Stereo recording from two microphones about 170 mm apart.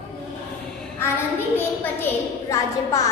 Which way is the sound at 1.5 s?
15° left (ahead or behind).